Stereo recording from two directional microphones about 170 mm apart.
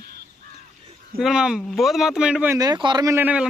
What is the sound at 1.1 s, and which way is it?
Speech, 5° right (ahead or behind).